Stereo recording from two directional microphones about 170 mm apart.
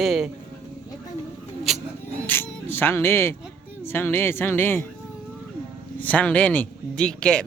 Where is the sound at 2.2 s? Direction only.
15° left (ahead or behind).